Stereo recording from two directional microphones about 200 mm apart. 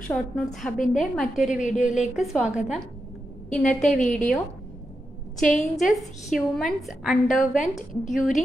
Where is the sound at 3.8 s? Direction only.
Centre (ahead or behind).